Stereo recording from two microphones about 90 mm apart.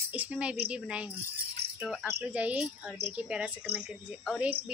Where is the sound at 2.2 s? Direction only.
15° right (ahead or behind).